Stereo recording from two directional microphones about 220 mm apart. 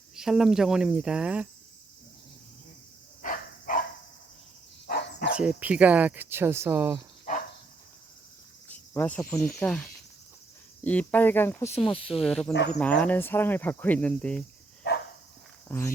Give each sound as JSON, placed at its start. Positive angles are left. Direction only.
{"t": 0.2, "sound": "speech", "side_deg": 0}
{"t": 3.2, "sound": "dog", "side_deg": 35}
{"t": 5.4, "sound": "speech", "side_deg": -5}
{"t": 8.7, "sound": "speech", "side_deg": 10}
{"t": 14.8, "sound": "dog", "side_deg": 45}
{"t": 15.7, "sound": "speech", "side_deg": 10}